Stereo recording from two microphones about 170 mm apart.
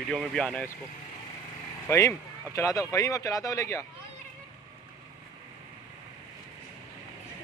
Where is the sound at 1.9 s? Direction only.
20° left (ahead or behind).